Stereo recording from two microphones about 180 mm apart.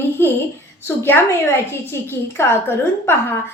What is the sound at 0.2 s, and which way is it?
A woman's voice, 10° left (ahead or behind).